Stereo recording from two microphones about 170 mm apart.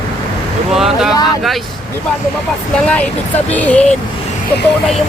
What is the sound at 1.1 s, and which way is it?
Vehicle, 20° left (ahead or behind).